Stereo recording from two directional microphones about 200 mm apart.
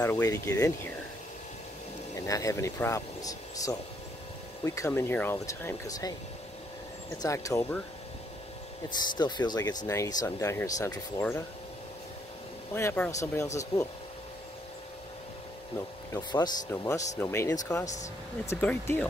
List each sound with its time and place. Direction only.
0.0 s speech: 10° left (ahead or behind)
2.1 s speech: 15° left (ahead or behind)
7.2 s speech: 15° left (ahead or behind)
9.0 s speech: 20° left (ahead or behind)
12.7 s speech: 10° left (ahead or behind)
16.1 s speech: 20° left (ahead or behind)